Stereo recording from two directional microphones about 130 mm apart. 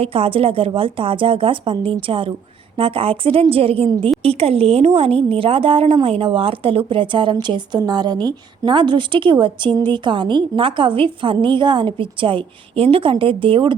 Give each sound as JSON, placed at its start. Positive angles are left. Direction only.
{"t": 0.0, "sound": "a woman's voice", "side_deg": -45}